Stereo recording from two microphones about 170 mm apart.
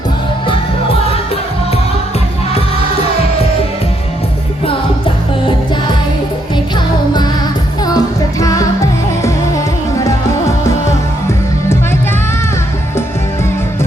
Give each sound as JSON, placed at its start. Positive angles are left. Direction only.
{"t": 7.9, "sound": "music", "side_deg": 20}